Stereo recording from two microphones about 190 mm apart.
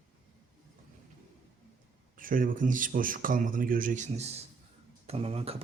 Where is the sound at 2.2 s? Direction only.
45° right (ahead or behind).